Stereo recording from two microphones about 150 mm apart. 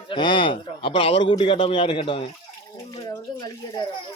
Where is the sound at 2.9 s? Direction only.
20° left (ahead or behind).